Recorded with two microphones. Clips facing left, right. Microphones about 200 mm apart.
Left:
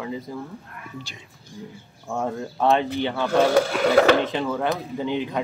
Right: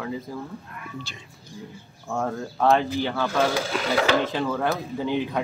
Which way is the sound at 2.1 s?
5° left (ahead or behind).